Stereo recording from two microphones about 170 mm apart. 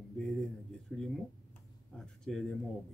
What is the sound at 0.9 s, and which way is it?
Speech, 5° left (ahead or behind).